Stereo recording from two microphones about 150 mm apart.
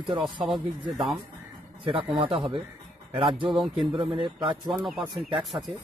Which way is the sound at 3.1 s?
35° right (ahead or behind).